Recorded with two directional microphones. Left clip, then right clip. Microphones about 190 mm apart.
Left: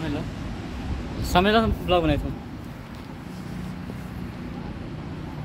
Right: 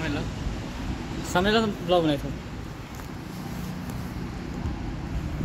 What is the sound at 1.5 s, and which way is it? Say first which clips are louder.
Speech: left 2 dB; 30° left (ahead or behind).